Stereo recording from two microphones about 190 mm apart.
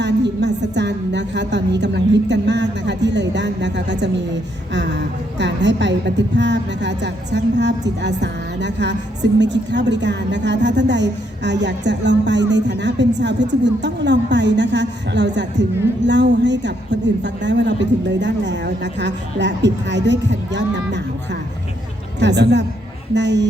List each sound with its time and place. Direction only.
0.0 s a woman's voice: 65° right (ahead or behind)
22.2 s a woman's voice: 65° right (ahead or behind)